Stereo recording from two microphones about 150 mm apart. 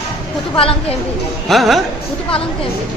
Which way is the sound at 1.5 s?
Centre (ahead or behind).